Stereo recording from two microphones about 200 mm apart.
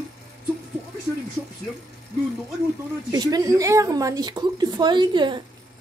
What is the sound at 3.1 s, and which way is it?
A woman's voice, 20° right (ahead or behind).